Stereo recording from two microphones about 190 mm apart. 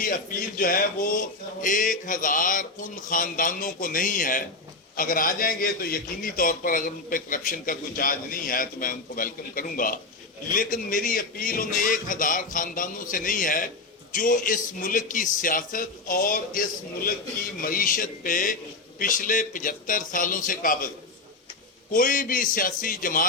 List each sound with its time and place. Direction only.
0.0 s a man's voice: 50° left (ahead or behind)
21.9 s a man's voice: 45° left (ahead or behind)